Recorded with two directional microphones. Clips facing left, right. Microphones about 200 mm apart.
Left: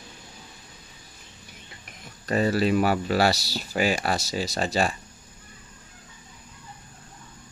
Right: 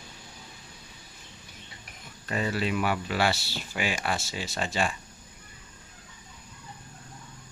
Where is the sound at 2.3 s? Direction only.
40° left (ahead or behind).